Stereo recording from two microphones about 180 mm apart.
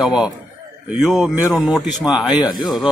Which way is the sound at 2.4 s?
25° left (ahead or behind).